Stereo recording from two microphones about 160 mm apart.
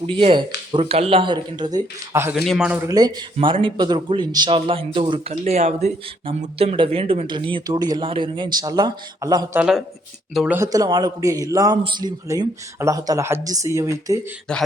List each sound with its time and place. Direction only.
0.1 s speech: 30° right (ahead or behind)
2.3 s speech: centre (ahead or behind)
2.7 s speech: 20° right (ahead or behind)
5.5 s speech: 45° right (ahead or behind); by 9.6 s 20° right (ahead or behind)
9.6 s speech: 5° right (ahead or behind)
10.6 s speech: 20° right (ahead or behind)
14.5 s speech: 5° left (ahead or behind)